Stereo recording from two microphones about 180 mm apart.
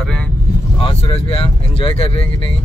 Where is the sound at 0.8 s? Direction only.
30° left (ahead or behind).